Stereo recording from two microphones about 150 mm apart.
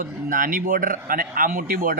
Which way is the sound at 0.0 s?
65° right (ahead or behind).